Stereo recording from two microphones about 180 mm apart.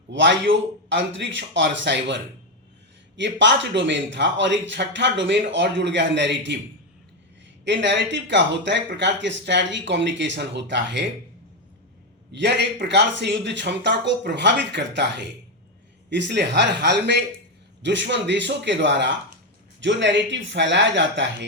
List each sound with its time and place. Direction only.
0.1 s a man's voice: 85° right
3.2 s a man's voice: 80° right
7.6 s a man's voice: 80° right
12.3 s a man's voice: 70° right (ahead or behind)